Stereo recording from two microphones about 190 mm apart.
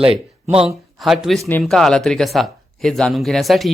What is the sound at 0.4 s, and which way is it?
Speech, 30° right (ahead or behind).